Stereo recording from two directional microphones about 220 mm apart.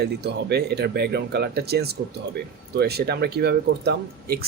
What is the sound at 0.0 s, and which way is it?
Speech, 50° right (ahead or behind).